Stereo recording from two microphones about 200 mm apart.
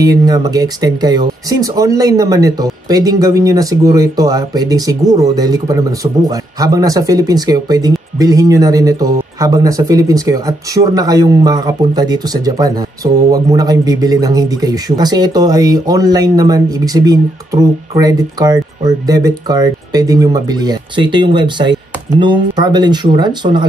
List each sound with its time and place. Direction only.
0.0 s speech: 20° right (ahead or behind)